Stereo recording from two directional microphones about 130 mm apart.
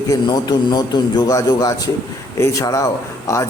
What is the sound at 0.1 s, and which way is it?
A man's voice, 30° left (ahead or behind).